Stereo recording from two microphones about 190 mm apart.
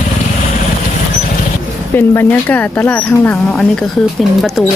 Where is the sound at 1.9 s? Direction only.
10° left (ahead or behind).